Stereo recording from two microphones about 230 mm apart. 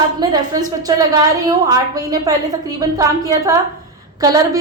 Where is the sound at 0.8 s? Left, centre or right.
Centre.